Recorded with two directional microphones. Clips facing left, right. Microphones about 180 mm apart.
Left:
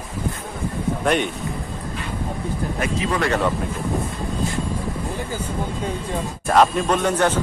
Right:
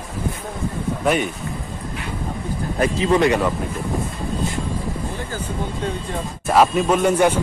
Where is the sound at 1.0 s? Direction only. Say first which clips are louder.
Right 1 dB; 5° right (ahead or behind).